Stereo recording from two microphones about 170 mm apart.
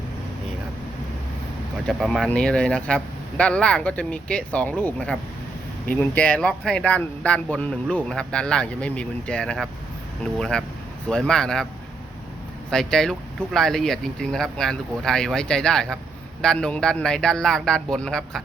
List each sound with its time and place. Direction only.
1.9 s speech: centre (ahead or behind)
12.7 s speech: 5° left (ahead or behind)